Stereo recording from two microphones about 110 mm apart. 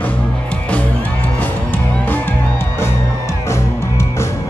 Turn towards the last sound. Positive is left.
turn(degrees=25)  # may be behind; listen again after turning